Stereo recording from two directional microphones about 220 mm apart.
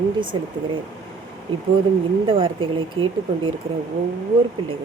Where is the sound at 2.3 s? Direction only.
25° right (ahead or behind).